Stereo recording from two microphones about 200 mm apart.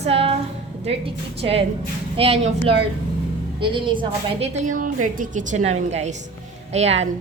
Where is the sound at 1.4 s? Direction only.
30° right (ahead or behind).